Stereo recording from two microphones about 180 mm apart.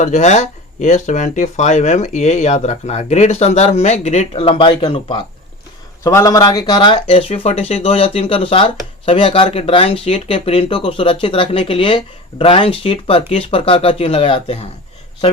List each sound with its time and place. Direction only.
0.0 s speech: 40° left (ahead or behind)
4.4 s speech: 30° left (ahead or behind)
6.0 s speech: 15° left (ahead or behind); by 14.7 s 35° left (ahead or behind)